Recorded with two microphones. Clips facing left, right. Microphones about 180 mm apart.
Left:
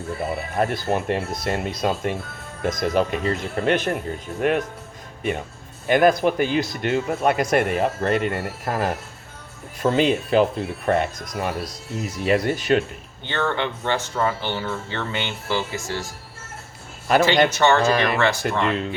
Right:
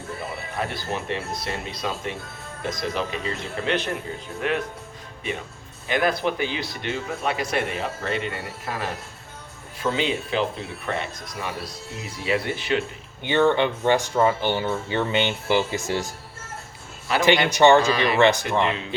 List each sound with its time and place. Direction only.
0.5 s speech: 50° left (ahead or behind)
5.9 s speech: 50° left (ahead or behind)
13.2 s speech: 15° right (ahead or behind)
17.5 s speech: 15° right (ahead or behind)
17.8 s speech: 50° left (ahead or behind)
18.2 s speech: 20° right (ahead or behind)